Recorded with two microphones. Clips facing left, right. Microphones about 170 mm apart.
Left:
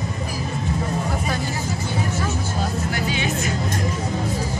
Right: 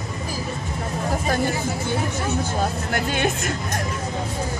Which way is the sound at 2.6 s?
50° right (ahead or behind).